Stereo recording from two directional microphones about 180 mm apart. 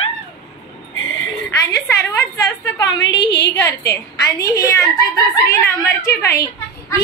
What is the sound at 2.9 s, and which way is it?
Speech, 80° left.